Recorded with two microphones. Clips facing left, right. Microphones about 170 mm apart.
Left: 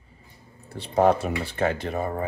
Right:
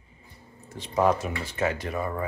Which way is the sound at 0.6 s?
35° left (ahead or behind).